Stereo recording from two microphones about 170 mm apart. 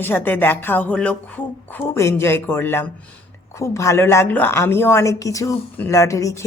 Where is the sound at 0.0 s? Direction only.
10° left (ahead or behind).